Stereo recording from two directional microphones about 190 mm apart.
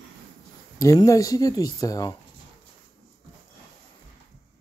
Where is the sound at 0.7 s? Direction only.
15° left (ahead or behind).